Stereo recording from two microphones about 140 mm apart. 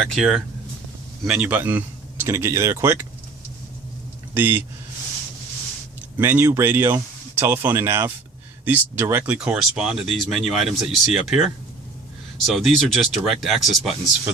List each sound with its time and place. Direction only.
0.1 s speech: centre (ahead or behind)
4.4 s speech: 15° right (ahead or behind)
6.1 s speech: 15° right (ahead or behind)
12.5 s speech: centre (ahead or behind)